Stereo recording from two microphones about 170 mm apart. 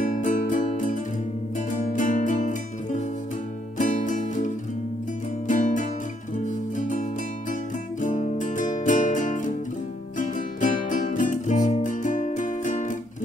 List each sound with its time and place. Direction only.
0.0 s music: 50° left (ahead or behind)
5.5 s music: 45° left (ahead or behind)